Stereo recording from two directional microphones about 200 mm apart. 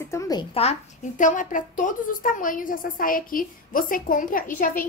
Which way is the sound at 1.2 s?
40° left (ahead or behind).